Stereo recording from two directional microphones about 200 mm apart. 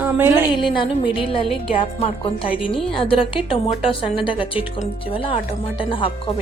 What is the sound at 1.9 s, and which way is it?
A woman's voice, 30° left (ahead or behind).